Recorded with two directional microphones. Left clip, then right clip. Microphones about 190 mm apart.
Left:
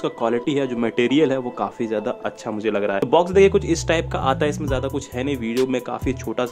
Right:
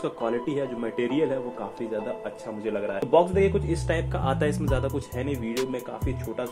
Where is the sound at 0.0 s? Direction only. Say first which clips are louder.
Left 6 dB; 25° left (ahead or behind).